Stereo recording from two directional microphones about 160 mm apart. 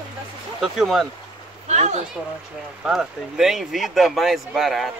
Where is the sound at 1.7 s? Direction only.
45° right (ahead or behind).